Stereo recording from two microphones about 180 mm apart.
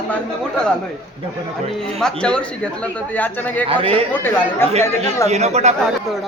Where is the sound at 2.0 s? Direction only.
5° left (ahead or behind).